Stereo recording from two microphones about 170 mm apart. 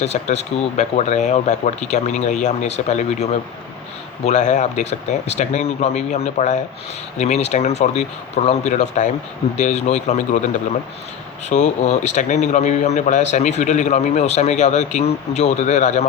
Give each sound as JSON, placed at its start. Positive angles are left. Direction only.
{"t": 0.0, "sound": "speech", "side_deg": 40}
{"t": 4.3, "sound": "a man's voice", "side_deg": 45}